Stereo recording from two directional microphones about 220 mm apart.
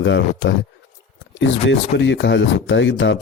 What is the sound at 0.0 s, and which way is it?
Speech, 55° left (ahead or behind).